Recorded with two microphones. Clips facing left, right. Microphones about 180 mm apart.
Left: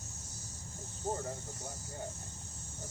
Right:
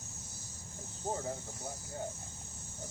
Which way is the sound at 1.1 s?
5° right (ahead or behind).